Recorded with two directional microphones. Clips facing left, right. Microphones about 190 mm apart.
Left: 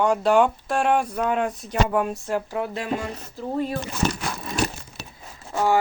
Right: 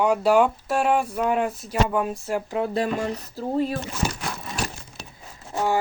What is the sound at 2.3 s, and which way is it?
Speech, 20° right (ahead or behind).